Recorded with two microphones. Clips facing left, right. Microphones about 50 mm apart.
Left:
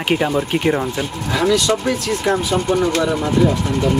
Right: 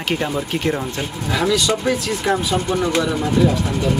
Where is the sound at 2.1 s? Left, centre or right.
Centre.